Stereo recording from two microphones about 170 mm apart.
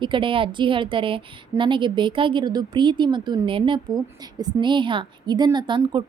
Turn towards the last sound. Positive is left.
turn(degrees=-25)  # may be behind; listen again after turning